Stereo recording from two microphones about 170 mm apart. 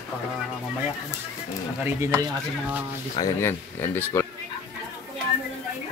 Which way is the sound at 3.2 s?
15° left (ahead or behind).